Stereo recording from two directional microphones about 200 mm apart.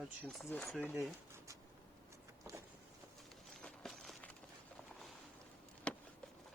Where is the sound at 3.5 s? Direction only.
Centre (ahead or behind).